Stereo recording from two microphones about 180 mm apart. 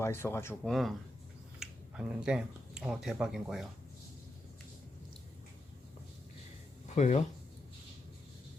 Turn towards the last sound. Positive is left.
turn(degrees=40)  # may be behind; listen again after turning